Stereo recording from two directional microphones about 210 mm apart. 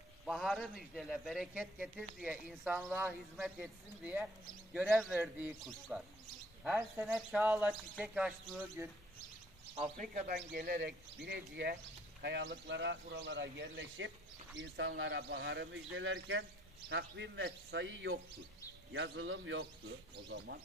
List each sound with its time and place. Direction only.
0.2 s a man's voice: centre (ahead or behind)
9.8 s a man's voice: 40° right (ahead or behind); by 20.5 s 55° right (ahead or behind)